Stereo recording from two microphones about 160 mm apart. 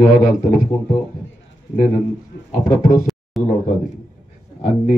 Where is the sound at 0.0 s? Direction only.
55° left (ahead or behind).